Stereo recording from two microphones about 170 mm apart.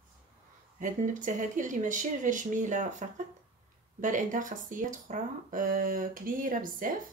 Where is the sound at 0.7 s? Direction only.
50° right (ahead or behind).